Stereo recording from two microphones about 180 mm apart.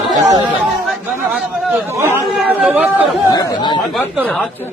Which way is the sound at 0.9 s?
Centre (ahead or behind).